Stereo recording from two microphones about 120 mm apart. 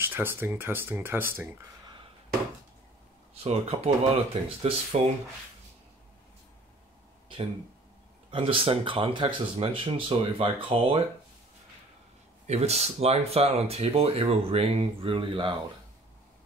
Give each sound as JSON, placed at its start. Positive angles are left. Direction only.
{"t": 0.0, "sound": "speech", "side_deg": -20}
{"t": 3.4, "sound": "speech", "side_deg": -55}
{"t": 8.3, "sound": "speech", "side_deg": -50}
{"t": 12.4, "sound": "speech", "side_deg": -60}